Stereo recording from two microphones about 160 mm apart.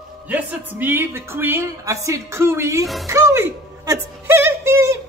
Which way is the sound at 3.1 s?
20° right (ahead or behind).